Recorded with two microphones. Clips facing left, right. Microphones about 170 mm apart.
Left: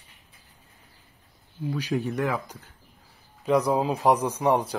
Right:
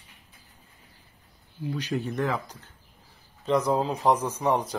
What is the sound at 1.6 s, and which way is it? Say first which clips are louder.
Speech: left 2 dB; 5° left (ahead or behind).